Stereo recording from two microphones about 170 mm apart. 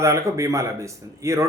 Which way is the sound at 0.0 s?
15° right (ahead or behind).